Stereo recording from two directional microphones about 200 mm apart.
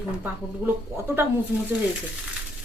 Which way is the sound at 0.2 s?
10° right (ahead or behind).